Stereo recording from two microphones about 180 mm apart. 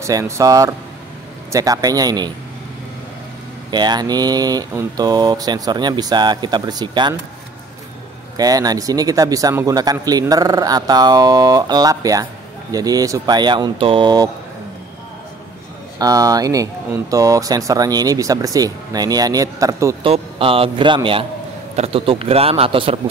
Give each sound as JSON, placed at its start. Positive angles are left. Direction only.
{"t": 0.0, "sound": "speech", "side_deg": -15}
{"t": 3.7, "sound": "speech", "side_deg": -25}
{"t": 8.4, "sound": "speech", "side_deg": -20}
{"t": 16.0, "sound": "speech", "side_deg": -20}
{"t": 20.0, "sound": "a man's voice", "side_deg": -30}